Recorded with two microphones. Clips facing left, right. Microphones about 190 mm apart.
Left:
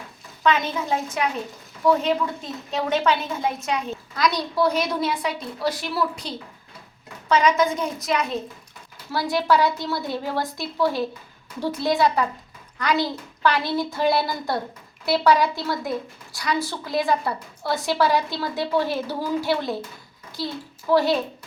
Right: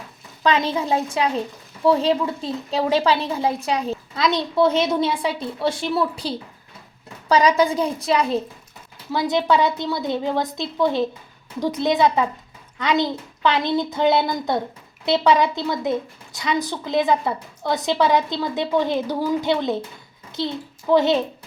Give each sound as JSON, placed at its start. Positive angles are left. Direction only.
{"t": 0.4, "sound": "a woman's voice", "side_deg": -30}
{"t": 9.3, "sound": "a woman's voice", "side_deg": -20}